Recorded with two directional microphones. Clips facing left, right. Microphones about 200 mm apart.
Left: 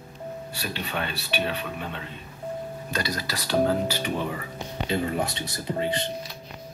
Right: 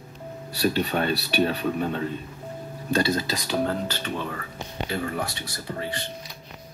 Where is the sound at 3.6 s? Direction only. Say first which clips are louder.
Left 3 dB; 10° left (ahead or behind).